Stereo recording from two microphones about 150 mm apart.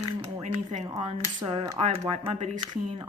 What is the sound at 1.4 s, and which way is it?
Speech, 40° right (ahead or behind).